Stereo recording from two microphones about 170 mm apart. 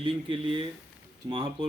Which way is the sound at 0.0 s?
30° right (ahead or behind).